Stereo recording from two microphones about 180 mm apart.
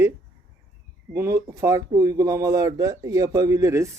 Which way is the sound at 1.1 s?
15° right (ahead or behind).